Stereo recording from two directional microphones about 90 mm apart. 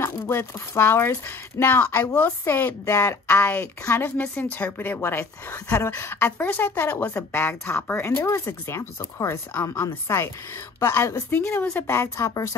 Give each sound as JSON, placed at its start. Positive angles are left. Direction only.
{"t": 0.0, "sound": "speech", "side_deg": 30}